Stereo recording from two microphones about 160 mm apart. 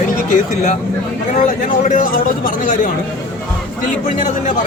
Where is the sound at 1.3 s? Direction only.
55° left (ahead or behind).